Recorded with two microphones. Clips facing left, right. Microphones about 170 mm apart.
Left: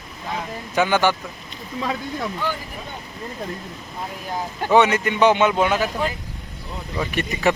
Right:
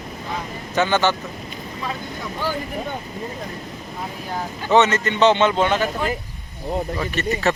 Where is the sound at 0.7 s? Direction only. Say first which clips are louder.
Even; 10° left (ahead or behind).